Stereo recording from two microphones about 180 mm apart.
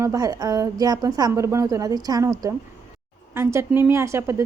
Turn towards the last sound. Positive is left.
turn(degrees=-15)  # may be behind; listen again after turning